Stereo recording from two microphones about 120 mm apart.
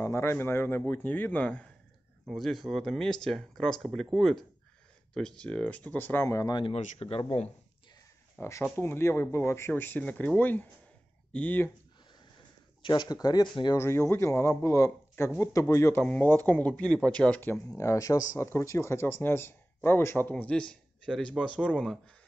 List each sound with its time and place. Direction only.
0.0 s speech: 25° left (ahead or behind)
6.2 s speech: 25° left (ahead or behind)
6.7 s speech: 60° left (ahead or behind)
8.4 s speech: 25° left (ahead or behind)
12.8 s speech: 40° left (ahead or behind)
13.7 s speech: 20° left (ahead or behind)
17.6 s speech: 25° left (ahead or behind); by 21.9 s 10° left (ahead or behind)